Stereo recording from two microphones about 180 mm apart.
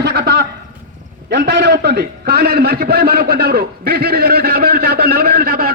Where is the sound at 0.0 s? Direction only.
65° right (ahead or behind).